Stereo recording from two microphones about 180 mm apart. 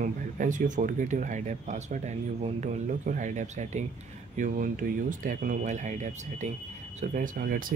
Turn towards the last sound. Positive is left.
turn(degrees=-50)  # may be behind; listen again after turning